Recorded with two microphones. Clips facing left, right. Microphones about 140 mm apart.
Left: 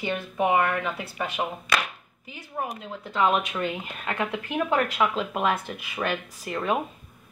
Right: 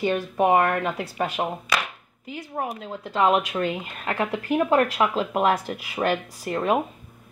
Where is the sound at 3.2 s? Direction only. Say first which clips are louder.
Right 3 dB; 30° right (ahead or behind).